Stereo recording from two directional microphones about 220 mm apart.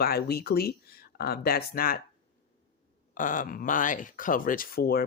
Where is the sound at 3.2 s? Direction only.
35° left (ahead or behind).